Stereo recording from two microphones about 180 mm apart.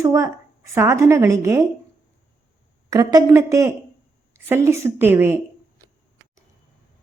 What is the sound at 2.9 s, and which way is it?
A woman's voice, 20° right (ahead or behind).